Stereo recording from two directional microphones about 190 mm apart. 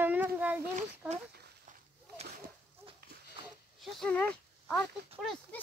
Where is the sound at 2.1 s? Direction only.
55° right (ahead or behind).